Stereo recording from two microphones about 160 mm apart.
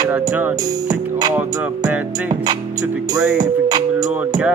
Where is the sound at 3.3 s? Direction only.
25° right (ahead or behind).